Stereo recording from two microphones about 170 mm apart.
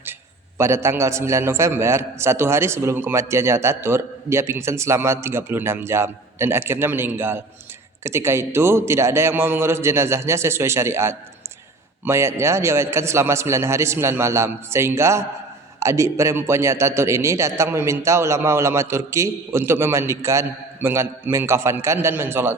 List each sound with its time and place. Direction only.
0.6 s a man's voice: 15° right (ahead or behind)